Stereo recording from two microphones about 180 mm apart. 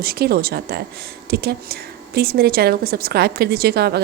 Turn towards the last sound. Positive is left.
turn(degrees=-60)  # may be behind; listen again after turning